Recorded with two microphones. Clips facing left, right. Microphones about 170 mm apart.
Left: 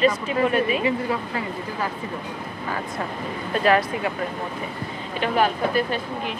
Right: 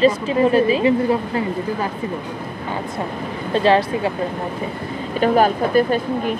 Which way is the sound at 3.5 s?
30° right (ahead or behind).